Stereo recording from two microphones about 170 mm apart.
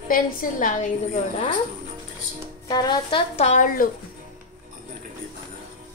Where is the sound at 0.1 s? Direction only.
55° left (ahead or behind).